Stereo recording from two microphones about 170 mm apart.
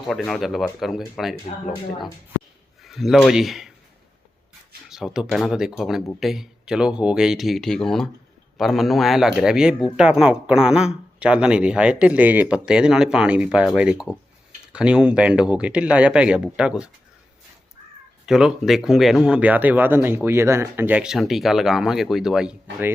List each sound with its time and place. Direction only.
0.1 s speech: centre (ahead or behind)
1.7 s speech: 25° left (ahead or behind)
2.8 s speech: centre (ahead or behind)
4.9 s speech: 5° right (ahead or behind)
18.3 s speech: 5° right (ahead or behind)